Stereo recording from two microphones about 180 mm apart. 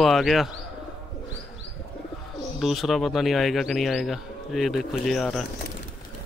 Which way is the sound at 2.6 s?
Centre (ahead or behind).